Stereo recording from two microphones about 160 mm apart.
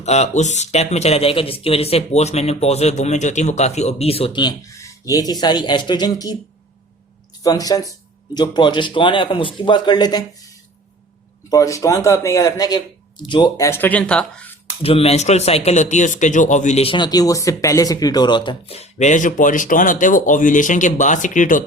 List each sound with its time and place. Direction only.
0.0 s speech: 45° left (ahead or behind); by 6.3 s 25° left (ahead or behind)
7.4 s speech: 20° left (ahead or behind)
11.4 s speech: 20° left (ahead or behind)
13.7 s speech: 10° left (ahead or behind)
14.8 s speech: 35° left (ahead or behind); by 21.6 s 55° left (ahead or behind)